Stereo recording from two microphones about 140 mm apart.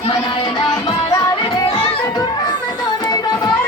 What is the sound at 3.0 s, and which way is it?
Carnatic music, 30° left (ahead or behind).